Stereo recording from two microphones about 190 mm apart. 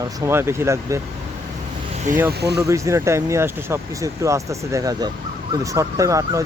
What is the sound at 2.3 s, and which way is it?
Speech, 60° right (ahead or behind).